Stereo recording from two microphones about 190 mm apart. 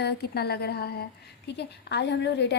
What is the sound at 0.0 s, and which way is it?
A woman's voice, 60° left (ahead or behind).